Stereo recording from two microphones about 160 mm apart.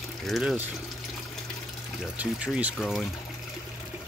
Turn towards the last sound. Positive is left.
turn(degrees=0)  # may be behind; listen again after turning